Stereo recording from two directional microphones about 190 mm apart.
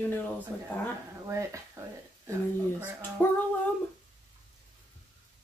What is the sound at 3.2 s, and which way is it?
Speech, 10° left (ahead or behind).